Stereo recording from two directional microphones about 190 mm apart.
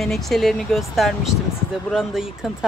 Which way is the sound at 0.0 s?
Centre (ahead or behind).